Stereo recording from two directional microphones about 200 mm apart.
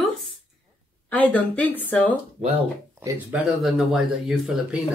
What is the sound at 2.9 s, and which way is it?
Speech, 10° right (ahead or behind).